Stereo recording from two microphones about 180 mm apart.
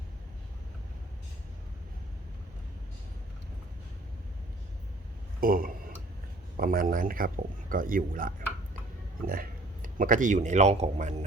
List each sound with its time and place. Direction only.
5.4 s a man's voice: 50° right (ahead or behind)